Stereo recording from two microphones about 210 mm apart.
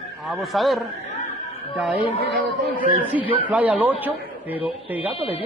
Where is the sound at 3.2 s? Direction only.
5° right (ahead or behind).